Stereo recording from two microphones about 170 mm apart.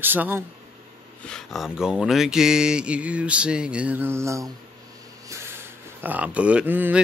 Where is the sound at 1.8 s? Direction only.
5° right (ahead or behind).